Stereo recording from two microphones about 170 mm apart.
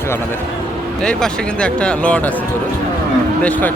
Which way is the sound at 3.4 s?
10° left (ahead or behind).